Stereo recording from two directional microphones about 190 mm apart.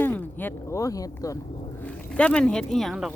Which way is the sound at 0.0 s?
10° left (ahead or behind).